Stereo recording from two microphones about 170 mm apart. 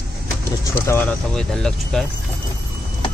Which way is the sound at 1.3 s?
5° left (ahead or behind).